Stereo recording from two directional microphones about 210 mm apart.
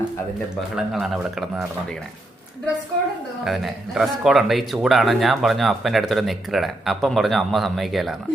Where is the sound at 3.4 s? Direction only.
Centre (ahead or behind).